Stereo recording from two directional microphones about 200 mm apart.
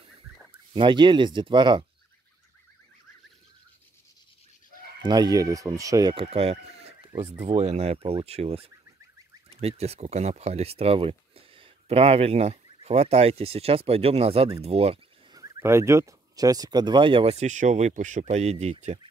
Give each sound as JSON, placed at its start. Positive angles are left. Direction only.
{"t": 0.7, "sound": "speech", "side_deg": -25}
{"t": 5.0, "sound": "speech", "side_deg": -20}
{"t": 15.3, "sound": "speech", "side_deg": -15}